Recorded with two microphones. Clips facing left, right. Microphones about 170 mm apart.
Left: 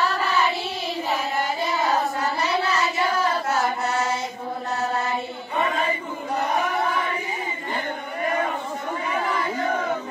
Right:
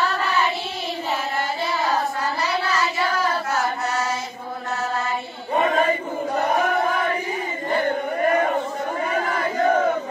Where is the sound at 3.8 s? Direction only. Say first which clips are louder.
Even; 25° left (ahead or behind).